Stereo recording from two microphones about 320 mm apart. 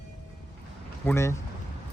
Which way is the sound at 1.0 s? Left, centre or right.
Centre.